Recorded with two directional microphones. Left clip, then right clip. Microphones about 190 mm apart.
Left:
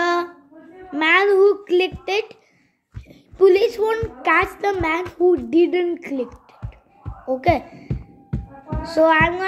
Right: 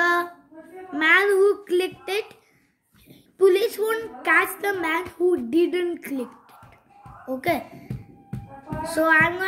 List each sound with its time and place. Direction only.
0.0 s a sound: 20° right (ahead or behind)
0.9 s music: 20° right (ahead or behind)
3.1 s a child's voice: 15° right (ahead or behind)
7.2 s a child's voice: 20° right (ahead or behind)
7.9 s music: 20° left (ahead or behind)
8.8 s a child's voice: 20° right (ahead or behind)